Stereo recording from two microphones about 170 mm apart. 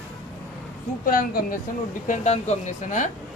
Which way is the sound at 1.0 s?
60° left (ahead or behind).